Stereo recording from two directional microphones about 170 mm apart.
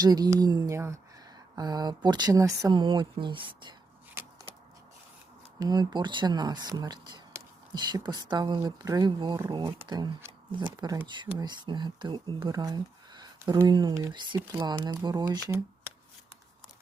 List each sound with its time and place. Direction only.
0.0 s speech: 20° right (ahead or behind)
5.5 s speech: 25° right (ahead or behind)